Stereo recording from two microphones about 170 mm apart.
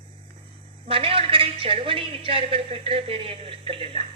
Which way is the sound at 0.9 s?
35° right (ahead or behind).